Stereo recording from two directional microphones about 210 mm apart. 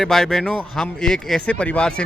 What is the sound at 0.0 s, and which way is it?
Speech, centre (ahead or behind).